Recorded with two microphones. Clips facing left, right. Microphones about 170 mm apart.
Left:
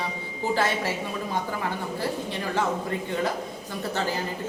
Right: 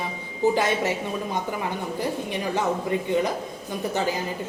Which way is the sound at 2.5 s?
15° right (ahead or behind).